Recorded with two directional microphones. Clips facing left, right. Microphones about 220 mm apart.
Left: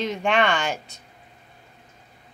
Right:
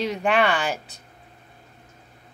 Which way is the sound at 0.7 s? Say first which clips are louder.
Even; 35° right (ahead or behind).